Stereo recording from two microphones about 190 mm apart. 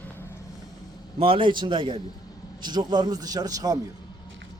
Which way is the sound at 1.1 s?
30° right (ahead or behind).